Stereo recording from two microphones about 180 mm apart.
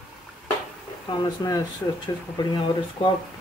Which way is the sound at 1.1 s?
25° left (ahead or behind).